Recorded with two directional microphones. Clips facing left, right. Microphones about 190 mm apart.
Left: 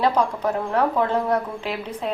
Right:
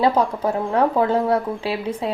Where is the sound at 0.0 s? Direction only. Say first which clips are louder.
Right 2 dB; 30° right (ahead or behind).